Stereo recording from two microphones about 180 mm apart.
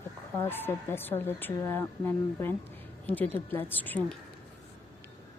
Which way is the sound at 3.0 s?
10° left (ahead or behind).